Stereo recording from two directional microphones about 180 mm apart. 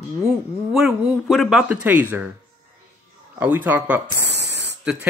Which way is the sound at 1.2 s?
Centre (ahead or behind).